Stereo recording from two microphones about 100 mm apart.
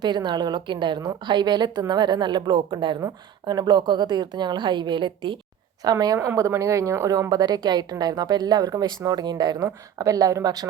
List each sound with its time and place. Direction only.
0.0 s a woman's voice: 45° right (ahead or behind)
5.8 s a woman's voice: 40° right (ahead or behind)